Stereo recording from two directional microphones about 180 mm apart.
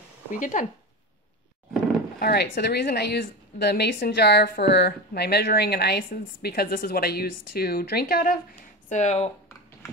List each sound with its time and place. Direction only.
0.3 s speech: 45° left (ahead or behind)
2.1 s a woman's voice: 55° left (ahead or behind)
8.8 s speech: 40° left (ahead or behind)